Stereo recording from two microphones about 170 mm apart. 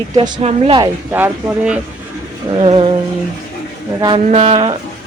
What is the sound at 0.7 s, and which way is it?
Speech, 15° right (ahead or behind).